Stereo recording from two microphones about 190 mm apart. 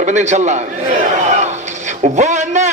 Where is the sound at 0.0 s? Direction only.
40° right (ahead or behind).